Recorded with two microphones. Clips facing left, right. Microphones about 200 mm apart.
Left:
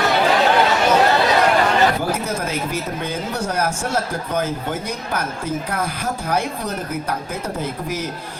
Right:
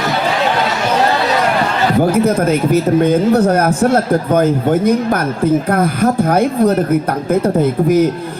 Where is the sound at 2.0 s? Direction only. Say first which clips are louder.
Right 11 dB; 55° right (ahead or behind).